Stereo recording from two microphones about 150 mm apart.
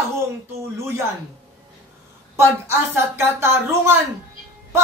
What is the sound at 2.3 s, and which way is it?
A man's voice, 15° right (ahead or behind).